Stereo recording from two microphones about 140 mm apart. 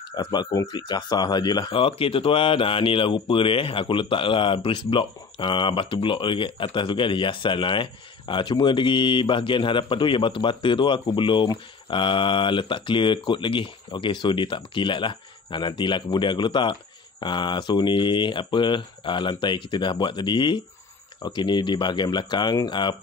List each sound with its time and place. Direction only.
0.1 s speech: 30° left (ahead or behind)